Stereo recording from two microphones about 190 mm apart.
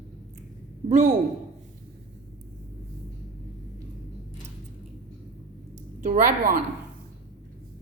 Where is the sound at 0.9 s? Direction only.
40° right (ahead or behind).